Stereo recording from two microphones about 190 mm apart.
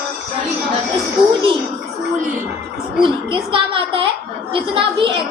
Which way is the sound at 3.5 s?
25° right (ahead or behind).